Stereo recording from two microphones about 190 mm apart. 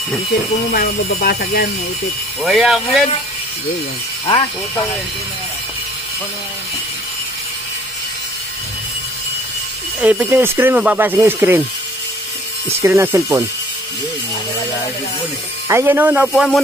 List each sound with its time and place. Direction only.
0.7 s speech: 55° left (ahead or behind)
2.4 s speech: centre (ahead or behind)
10.0 s speech: 10° right (ahead or behind)
12.8 s speech: 15° right (ahead or behind)
15.7 s speech: 10° right (ahead or behind)